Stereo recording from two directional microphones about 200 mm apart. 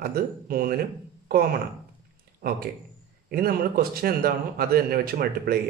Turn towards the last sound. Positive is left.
turn(degrees=-50)  # may be behind; listen again after turning